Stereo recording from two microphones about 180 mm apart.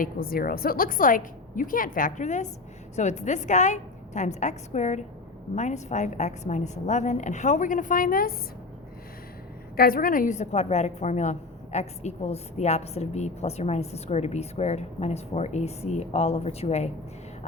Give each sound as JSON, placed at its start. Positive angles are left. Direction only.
{"t": 0.0, "sound": "a woman's voice", "side_deg": 55}
{"t": 9.7, "sound": "a woman's voice", "side_deg": 55}